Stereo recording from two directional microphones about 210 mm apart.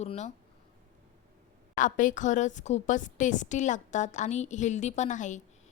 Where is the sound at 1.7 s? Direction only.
40° left (ahead or behind).